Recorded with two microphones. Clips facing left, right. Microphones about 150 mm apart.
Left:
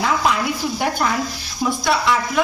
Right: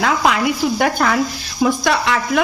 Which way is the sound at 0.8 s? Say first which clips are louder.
Right 2 dB; 75° right (ahead or behind).